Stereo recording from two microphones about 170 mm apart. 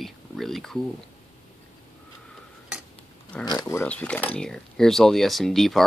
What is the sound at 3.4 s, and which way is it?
Speech, 20° left (ahead or behind).